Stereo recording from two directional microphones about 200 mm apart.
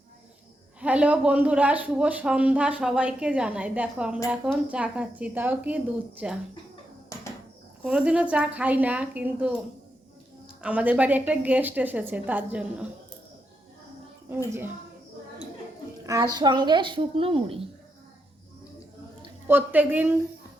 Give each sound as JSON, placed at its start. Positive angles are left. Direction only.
{"t": 0.8, "sound": "speech", "side_deg": -5}
{"t": 7.8, "sound": "speech", "side_deg": -5}
{"t": 10.6, "sound": "speech", "side_deg": -5}
{"t": 14.3, "sound": "speech", "side_deg": -10}
{"t": 16.0, "sound": "a woman's voice", "side_deg": -20}
{"t": 19.5, "sound": "speech", "side_deg": -10}